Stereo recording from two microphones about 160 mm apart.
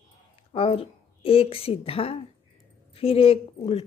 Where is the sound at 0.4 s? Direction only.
35° left (ahead or behind).